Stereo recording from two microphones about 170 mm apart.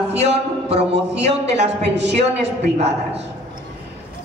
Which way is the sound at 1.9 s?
90° right.